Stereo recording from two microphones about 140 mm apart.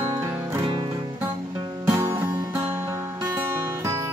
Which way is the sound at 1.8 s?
20° right (ahead or behind).